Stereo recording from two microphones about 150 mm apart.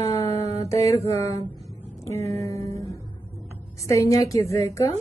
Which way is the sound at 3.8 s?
20° left (ahead or behind).